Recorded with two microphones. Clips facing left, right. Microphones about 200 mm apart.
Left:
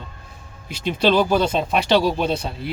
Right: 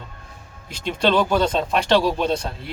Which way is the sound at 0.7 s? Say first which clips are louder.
Left 2 dB; 5° left (ahead or behind).